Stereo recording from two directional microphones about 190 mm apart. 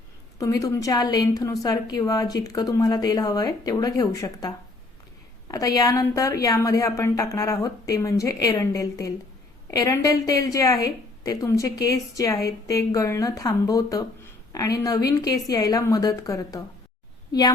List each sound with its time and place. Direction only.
0.3 s a woman's voice: 20° left (ahead or behind)